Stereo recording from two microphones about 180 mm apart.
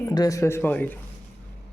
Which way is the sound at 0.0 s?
20° left (ahead or behind).